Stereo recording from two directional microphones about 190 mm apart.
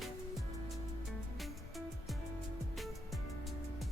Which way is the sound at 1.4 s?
Centre (ahead or behind).